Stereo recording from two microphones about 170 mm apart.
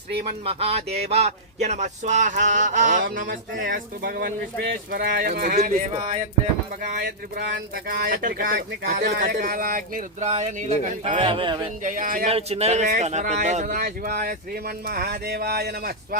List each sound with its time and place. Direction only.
0.4 s speech: 35° right (ahead or behind); by 5.8 s 60° right (ahead or behind)
6.8 s speech: 50° right (ahead or behind)
7.9 s speech: 60° right (ahead or behind); by 11.6 s 30° right (ahead or behind)
11.8 s speech: 55° right (ahead or behind)
12.3 s speech: 35° right (ahead or behind)
13.7 s speech: 65° right (ahead or behind)